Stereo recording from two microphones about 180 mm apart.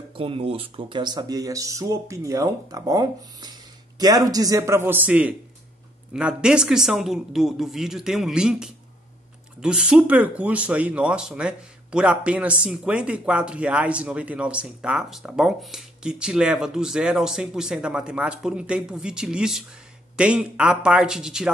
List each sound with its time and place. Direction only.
0.1 s speech: 30° right (ahead or behind); by 21.5 s 5° right (ahead or behind)